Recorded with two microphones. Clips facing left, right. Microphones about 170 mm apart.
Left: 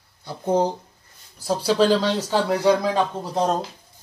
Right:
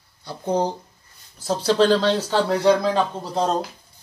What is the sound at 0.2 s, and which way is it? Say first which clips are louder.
Speech: left 2 dB; 20° left (ahead or behind).